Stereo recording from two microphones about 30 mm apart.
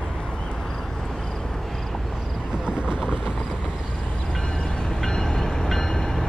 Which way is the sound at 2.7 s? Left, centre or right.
Right.